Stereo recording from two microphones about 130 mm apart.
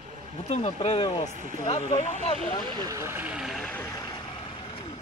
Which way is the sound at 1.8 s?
65° left (ahead or behind).